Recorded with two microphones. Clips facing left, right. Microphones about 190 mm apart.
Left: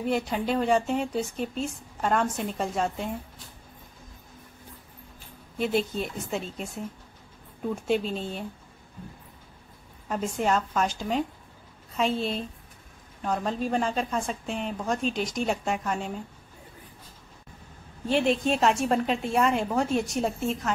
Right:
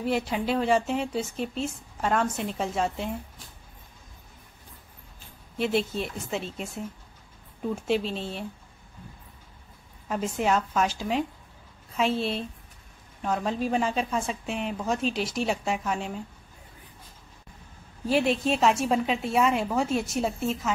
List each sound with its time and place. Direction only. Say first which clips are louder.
0.0 s speech: even; centre (ahead or behind)
5.6 s speech: even; centre (ahead or behind)
10.0 s speech: even; centre (ahead or behind)
18.0 s speech: even; 5° right (ahead or behind)